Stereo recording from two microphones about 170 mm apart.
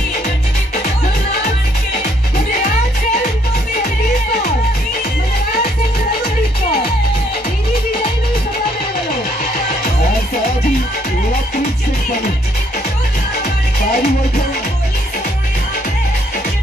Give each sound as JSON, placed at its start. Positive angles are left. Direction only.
{"t": 13.9, "sound": "music", "side_deg": 65}